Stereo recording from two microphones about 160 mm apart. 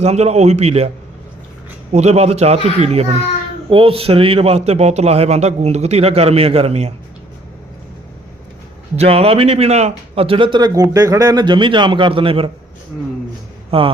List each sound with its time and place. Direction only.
0.0 s a man's voice: 40° right (ahead or behind)
1.9 s a man's voice: 45° right (ahead or behind)
9.0 s a man's voice: 40° right (ahead or behind)
13.7 s a man's voice: 35° right (ahead or behind)